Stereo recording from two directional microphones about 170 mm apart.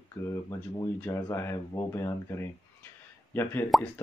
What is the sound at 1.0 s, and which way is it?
Speech, 15° left (ahead or behind).